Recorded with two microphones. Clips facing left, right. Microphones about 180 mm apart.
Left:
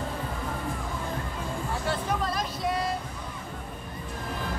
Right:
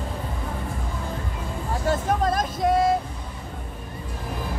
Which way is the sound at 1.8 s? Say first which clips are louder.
Right 8 dB; 45° right (ahead or behind).